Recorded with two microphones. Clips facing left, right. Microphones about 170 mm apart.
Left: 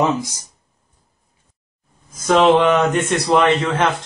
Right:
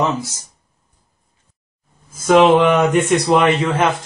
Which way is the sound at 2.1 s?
5° right (ahead or behind).